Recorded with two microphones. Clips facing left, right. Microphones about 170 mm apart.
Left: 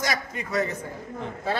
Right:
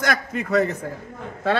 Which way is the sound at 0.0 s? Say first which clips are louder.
Right 5 dB; 60° right (ahead or behind).